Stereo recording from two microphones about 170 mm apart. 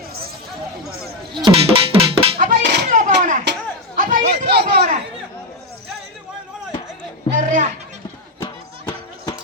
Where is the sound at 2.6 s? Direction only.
80° right.